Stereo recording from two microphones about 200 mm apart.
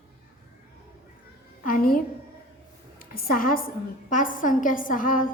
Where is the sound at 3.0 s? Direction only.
50° left (ahead or behind).